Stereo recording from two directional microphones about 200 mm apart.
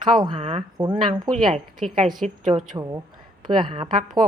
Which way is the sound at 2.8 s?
15° right (ahead or behind).